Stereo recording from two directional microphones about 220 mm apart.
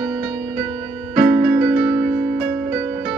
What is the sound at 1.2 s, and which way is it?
Keyboard, 10° right (ahead or behind).